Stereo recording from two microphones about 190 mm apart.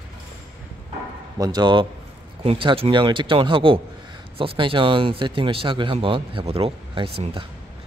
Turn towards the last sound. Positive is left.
turn(degrees=-25)  # may be behind; listen again after turning